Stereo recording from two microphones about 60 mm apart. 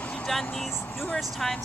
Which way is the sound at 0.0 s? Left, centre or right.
Centre.